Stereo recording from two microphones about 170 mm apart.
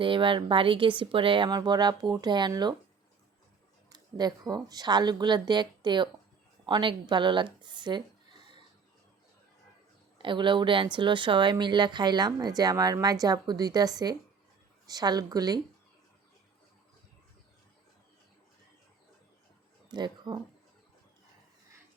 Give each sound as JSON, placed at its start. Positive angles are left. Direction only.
{"t": 0.0, "sound": "speech", "side_deg": -30}
{"t": 3.8, "sound": "speech", "side_deg": -25}
{"t": 10.2, "sound": "speech", "side_deg": -30}
{"t": 19.9, "sound": "speech", "side_deg": -25}